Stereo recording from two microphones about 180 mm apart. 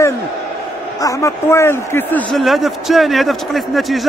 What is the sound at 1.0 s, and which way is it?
A man's voice, 15° left (ahead or behind).